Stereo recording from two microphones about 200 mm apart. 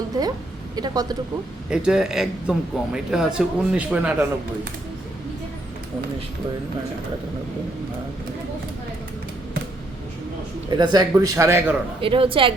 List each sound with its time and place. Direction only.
0.8 s a woman's voice: 20° right (ahead or behind)
1.7 s a man's voice: 5° right (ahead or behind)
10.7 s a man's voice: 20° right (ahead or behind)
11.9 s a woman's voice: 25° right (ahead or behind)